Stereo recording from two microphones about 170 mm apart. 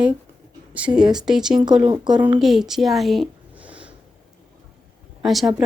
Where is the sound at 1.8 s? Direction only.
25° right (ahead or behind).